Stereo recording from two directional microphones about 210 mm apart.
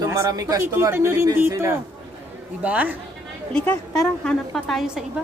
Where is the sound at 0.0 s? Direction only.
15° right (ahead or behind).